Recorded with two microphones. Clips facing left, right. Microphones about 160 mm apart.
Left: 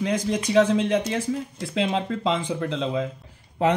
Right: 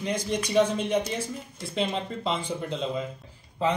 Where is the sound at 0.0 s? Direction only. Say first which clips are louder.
Left 4 dB; 90° left.